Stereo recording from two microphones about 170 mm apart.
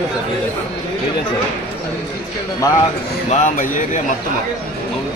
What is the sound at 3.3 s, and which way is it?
Speech, 50° left (ahead or behind).